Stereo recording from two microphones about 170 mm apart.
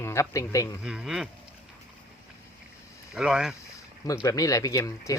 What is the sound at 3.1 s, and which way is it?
Speech, 5° right (ahead or behind).